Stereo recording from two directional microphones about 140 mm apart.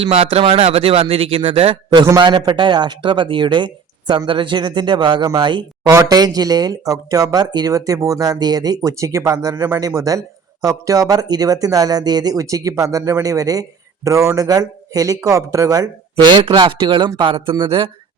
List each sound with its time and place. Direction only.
0.0 s a man's voice: 45° right (ahead or behind)